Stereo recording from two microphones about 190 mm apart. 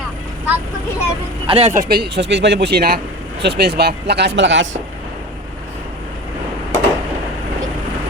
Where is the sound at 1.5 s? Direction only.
35° right (ahead or behind).